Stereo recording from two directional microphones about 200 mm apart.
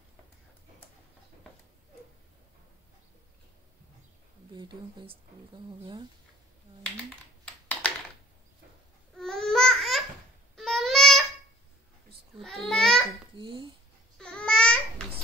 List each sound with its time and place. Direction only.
4.6 s a woman's voice: 25° right (ahead or behind)
9.1 s babbling: centre (ahead or behind)
12.6 s babbling: 5° left (ahead or behind)
13.4 s dishes: 25° right (ahead or behind)
14.1 s babbling: 5° left (ahead or behind)